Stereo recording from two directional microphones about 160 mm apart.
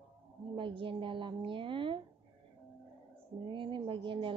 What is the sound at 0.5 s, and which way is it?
A woman's voice, 30° right (ahead or behind).